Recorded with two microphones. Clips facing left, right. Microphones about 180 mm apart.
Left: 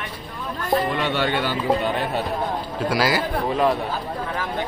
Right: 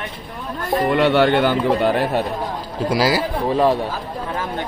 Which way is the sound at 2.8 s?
30° right (ahead or behind).